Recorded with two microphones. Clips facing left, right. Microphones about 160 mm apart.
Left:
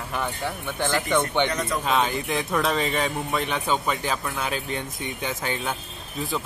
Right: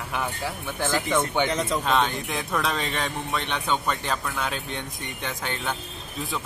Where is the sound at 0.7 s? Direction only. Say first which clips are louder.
Left 1 dB; centre (ahead or behind).